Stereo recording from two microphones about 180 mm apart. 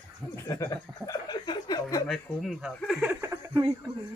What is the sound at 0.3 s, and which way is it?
Speech, 20° left (ahead or behind).